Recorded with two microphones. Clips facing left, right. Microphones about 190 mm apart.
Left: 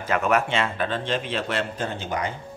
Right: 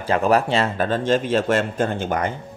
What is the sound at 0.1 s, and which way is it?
A man's voice, 35° right (ahead or behind).